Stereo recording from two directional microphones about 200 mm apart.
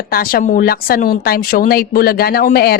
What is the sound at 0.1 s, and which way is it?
A woman's voice, 45° left (ahead or behind).